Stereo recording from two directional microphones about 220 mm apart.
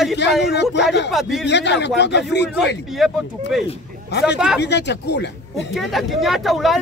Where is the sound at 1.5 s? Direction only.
50° left (ahead or behind).